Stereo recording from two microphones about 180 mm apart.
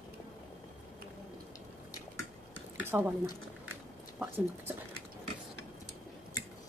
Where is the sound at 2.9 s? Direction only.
5° right (ahead or behind).